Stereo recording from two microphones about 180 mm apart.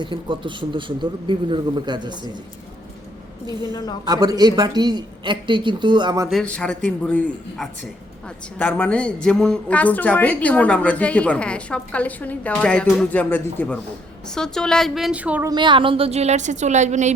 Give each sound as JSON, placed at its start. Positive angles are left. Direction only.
{"t": 0.0, "sound": "a man's voice", "side_deg": -25}
{"t": 4.0, "sound": "a man's voice", "side_deg": -20}
{"t": 6.3, "sound": "a woman's voice", "side_deg": 5}
{"t": 15.4, "sound": "a woman's voice", "side_deg": -25}